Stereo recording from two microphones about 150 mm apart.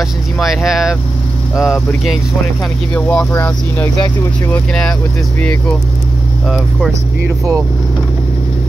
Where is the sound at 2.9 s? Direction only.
10° left (ahead or behind).